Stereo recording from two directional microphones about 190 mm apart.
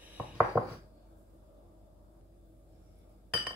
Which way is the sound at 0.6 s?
Centre (ahead or behind).